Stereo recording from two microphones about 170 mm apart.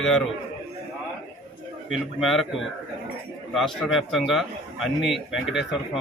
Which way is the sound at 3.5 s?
Centre (ahead or behind).